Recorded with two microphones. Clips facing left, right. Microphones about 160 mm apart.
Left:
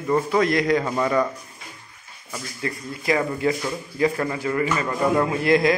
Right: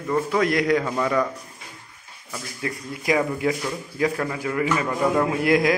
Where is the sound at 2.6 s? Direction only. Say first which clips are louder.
Even; 10° right (ahead or behind).